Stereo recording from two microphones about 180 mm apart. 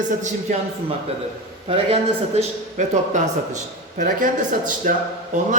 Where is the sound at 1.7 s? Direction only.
35° right (ahead or behind).